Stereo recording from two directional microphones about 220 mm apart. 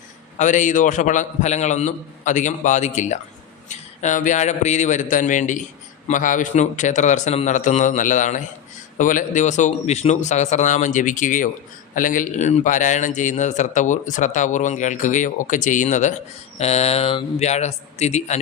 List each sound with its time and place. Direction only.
0.3 s a man's voice: 35° left (ahead or behind)